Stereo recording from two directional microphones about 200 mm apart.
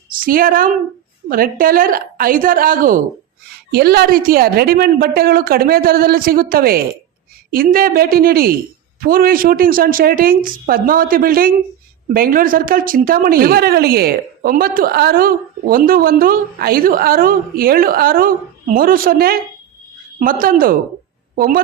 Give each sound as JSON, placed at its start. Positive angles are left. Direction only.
{"t": 0.1, "sound": "a woman's voice", "side_deg": -45}